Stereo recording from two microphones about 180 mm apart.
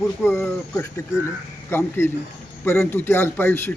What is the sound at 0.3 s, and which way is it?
A man's voice, 15° left (ahead or behind).